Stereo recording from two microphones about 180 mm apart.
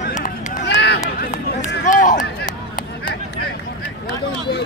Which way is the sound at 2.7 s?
55° left (ahead or behind).